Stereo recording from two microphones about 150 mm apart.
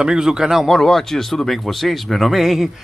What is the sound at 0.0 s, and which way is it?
A man's voice, 5° right (ahead or behind).